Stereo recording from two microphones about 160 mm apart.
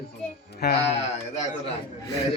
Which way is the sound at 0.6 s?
90° left.